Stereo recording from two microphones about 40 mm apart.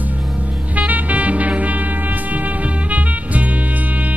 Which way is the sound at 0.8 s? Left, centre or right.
Right.